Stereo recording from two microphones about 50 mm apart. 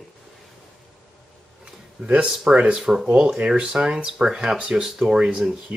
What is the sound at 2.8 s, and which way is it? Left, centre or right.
Speech, centre.